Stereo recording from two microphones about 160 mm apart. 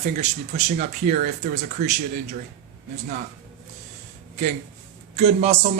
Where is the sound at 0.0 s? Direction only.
45° right (ahead or behind).